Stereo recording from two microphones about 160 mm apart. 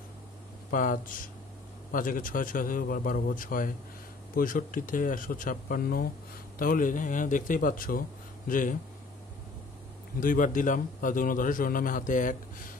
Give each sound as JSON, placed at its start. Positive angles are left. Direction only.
{"t": 0.7, "sound": "a man's voice", "side_deg": 55}
{"t": 10.2, "sound": "a man's voice", "side_deg": 55}